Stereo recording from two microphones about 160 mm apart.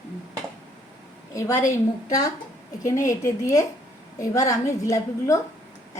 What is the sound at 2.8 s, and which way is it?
A woman's voice, 20° left (ahead or behind).